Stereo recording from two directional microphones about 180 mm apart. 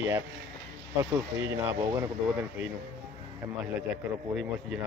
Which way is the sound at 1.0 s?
15° right (ahead or behind).